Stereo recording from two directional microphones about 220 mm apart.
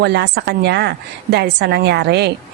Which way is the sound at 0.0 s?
50° right (ahead or behind).